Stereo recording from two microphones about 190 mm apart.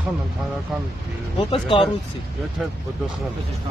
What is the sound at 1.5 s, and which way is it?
Speech, 25° left (ahead or behind).